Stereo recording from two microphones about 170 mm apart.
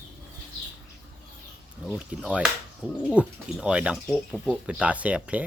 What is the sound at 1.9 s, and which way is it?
Speech, 5° right (ahead or behind).